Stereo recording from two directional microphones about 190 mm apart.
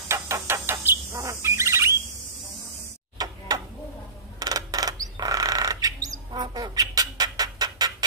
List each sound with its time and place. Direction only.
0.1 s bird: 15° right (ahead or behind)
3.2 s tick-tock: 20° right (ahead or behind)
4.4 s bird: 20° right (ahead or behind)